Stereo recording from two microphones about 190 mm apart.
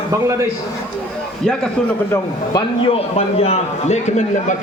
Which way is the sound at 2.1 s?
25° left (ahead or behind).